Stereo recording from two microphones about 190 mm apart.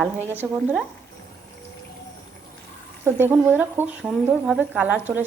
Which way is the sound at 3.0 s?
10° right (ahead or behind).